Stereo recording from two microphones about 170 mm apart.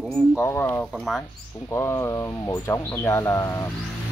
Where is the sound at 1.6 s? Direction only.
15° left (ahead or behind).